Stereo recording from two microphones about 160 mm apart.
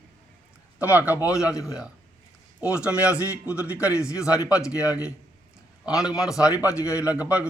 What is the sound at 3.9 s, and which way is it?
Speech, 20° left (ahead or behind).